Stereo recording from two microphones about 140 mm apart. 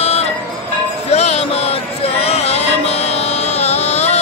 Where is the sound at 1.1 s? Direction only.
50° left (ahead or behind).